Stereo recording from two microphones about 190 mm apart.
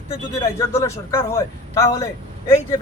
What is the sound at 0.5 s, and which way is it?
Speech, 15° left (ahead or behind).